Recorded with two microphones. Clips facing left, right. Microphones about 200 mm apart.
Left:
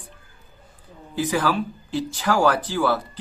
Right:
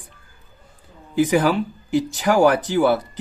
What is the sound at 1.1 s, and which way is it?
Speech, 20° right (ahead or behind).